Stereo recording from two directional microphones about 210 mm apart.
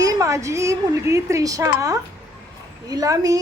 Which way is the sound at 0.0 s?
15° right (ahead or behind).